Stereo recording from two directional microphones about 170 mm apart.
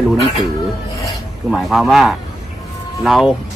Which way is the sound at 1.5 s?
Centre (ahead or behind).